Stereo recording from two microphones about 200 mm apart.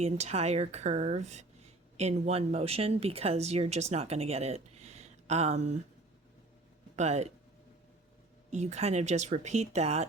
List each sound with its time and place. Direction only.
0.0 s speech: 30° right (ahead or behind)
6.9 s speech: 35° right (ahead or behind)
8.4 s speech: 35° right (ahead or behind)